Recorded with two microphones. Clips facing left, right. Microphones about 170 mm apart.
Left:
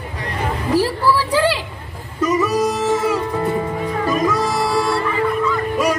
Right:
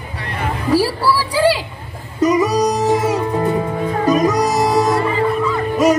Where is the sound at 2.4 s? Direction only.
40° right (ahead or behind).